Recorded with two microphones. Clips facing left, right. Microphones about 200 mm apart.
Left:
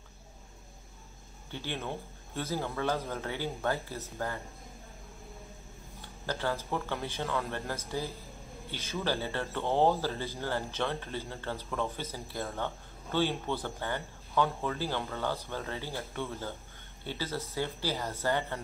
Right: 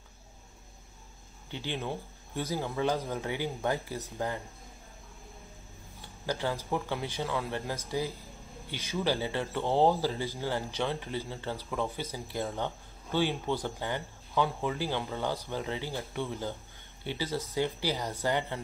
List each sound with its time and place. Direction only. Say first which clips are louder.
1.5 s speech: right 2 dB; 15° right (ahead or behind)
5.9 s speech: right 2 dB; 15° right (ahead or behind)